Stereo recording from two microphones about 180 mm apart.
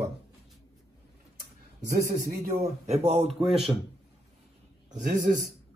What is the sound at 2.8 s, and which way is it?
Speech, 35° right (ahead or behind).